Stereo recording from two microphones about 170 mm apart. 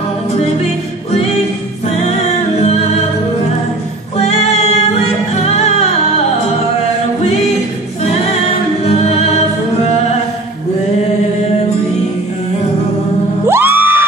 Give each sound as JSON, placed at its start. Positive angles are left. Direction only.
{"t": 2.0, "sound": "music", "side_deg": 40}
{"t": 4.2, "sound": "music", "side_deg": 40}
{"t": 13.5, "sound": "music", "side_deg": -15}